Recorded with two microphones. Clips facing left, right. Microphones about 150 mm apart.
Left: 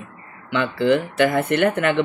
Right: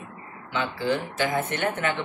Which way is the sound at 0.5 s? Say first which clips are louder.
Left 8 dB; 70° left (ahead or behind).